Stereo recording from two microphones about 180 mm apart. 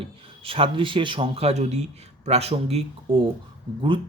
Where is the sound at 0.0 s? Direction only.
30° right (ahead or behind).